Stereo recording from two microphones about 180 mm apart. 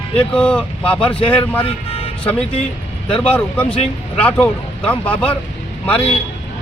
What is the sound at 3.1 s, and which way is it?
Speech, 5° left (ahead or behind).